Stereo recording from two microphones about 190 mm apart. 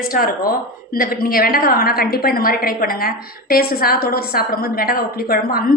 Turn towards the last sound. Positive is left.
turn(degrees=50)  # may be behind; listen again after turning